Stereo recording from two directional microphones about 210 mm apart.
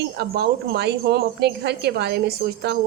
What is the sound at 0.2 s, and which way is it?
Speech, 50° right (ahead or behind).